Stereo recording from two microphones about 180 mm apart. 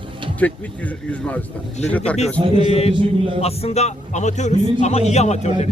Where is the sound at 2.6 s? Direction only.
35° left (ahead or behind).